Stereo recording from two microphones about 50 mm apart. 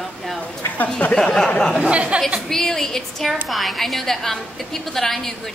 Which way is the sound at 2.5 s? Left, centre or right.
Centre.